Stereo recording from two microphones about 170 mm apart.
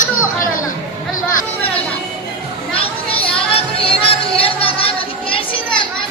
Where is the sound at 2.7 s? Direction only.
35° left (ahead or behind).